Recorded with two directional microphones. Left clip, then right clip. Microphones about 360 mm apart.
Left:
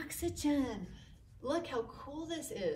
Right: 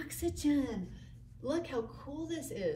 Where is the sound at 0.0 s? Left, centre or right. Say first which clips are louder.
Right 2 dB; centre.